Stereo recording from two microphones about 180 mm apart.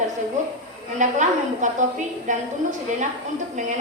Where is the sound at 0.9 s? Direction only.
45° right (ahead or behind).